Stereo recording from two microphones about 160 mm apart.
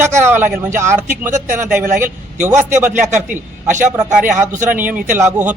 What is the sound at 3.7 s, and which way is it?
Speech, 50° right (ahead or behind).